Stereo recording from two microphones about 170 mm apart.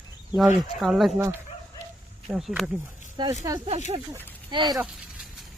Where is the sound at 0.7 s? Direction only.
Centre (ahead or behind).